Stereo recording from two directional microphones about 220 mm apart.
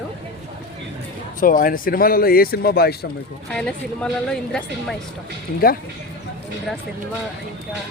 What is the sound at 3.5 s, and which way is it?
A woman's voice, 5° left (ahead or behind).